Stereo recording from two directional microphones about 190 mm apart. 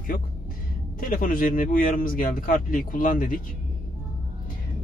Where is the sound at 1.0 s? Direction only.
45° left (ahead or behind).